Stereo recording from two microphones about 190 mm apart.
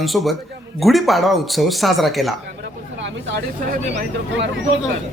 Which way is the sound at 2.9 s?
75° right (ahead or behind).